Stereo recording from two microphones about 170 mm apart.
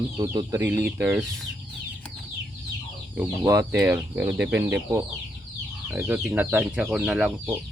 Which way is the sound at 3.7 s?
5° right (ahead or behind).